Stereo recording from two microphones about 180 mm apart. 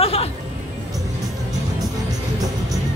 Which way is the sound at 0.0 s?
35° left (ahead or behind).